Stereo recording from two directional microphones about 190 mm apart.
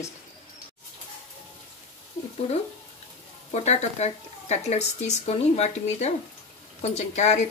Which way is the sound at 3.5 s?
35° left (ahead or behind).